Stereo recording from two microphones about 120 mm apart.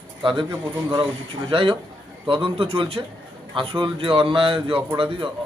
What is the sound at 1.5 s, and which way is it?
A man's voice, 45° right (ahead or behind).